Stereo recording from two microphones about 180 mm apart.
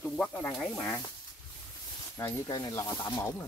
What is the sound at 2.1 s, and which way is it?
Speech, 15° left (ahead or behind).